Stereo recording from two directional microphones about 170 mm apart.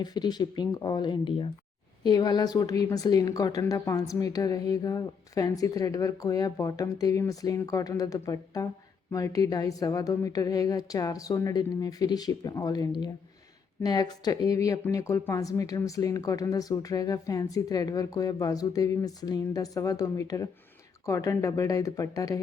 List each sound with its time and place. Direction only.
0.0 s a woman's voice: 25° left (ahead or behind)